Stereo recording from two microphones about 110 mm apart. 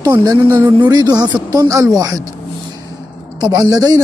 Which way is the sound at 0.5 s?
20° right (ahead or behind).